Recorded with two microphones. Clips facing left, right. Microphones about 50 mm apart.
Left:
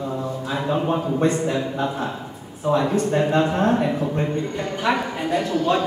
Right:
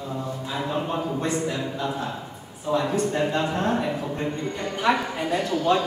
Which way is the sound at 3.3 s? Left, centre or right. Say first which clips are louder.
Left 5 dB; left.